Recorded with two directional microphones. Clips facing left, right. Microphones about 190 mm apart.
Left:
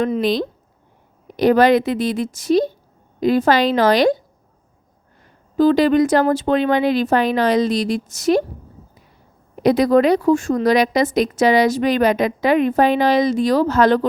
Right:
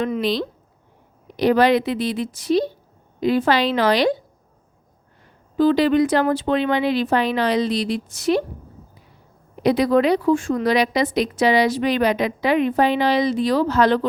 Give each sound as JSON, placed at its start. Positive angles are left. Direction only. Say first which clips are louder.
{"t": 0.0, "sound": "a woman's voice", "louder": "left 3 dB", "side_deg": 45}
{"t": 5.5, "sound": "a woman's voice", "louder": "left 2 dB", "side_deg": 45}
{"t": 9.6, "sound": "a woman's voice", "louder": "left 3 dB", "side_deg": 45}